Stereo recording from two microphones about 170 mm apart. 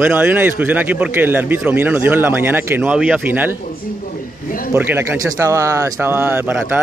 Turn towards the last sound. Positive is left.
turn(degrees=-10)  # may be behind; listen again after turning